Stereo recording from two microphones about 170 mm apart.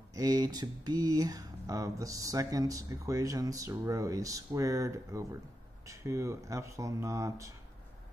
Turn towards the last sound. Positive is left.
turn(degrees=-20)  # may be behind; listen again after turning